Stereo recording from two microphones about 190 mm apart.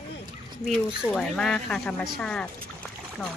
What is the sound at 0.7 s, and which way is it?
A woman's voice, 5° left (ahead or behind).